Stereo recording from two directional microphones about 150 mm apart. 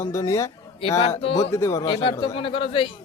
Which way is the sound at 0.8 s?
40° left (ahead or behind).